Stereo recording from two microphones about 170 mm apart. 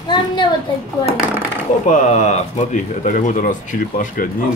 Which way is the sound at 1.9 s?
45° left (ahead or behind).